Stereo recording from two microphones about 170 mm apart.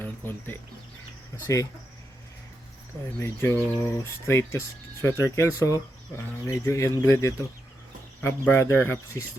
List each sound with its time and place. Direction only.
0.0 s speech: 10° left (ahead or behind)
3.2 s speech: 15° left (ahead or behind)